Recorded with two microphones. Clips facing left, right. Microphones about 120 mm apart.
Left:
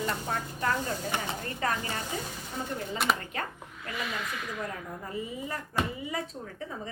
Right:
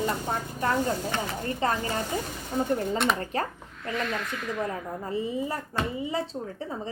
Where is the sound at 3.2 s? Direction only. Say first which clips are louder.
Right 7 dB; 35° right (ahead or behind).